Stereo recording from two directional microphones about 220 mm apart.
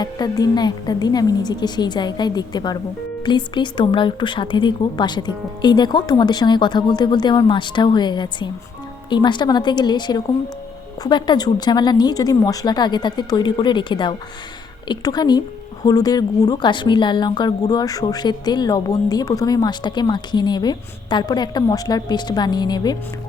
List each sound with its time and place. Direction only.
0.0 s a woman's voice: 20° left (ahead or behind)